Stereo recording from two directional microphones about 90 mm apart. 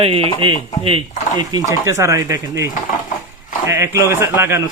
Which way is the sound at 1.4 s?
45° right (ahead or behind).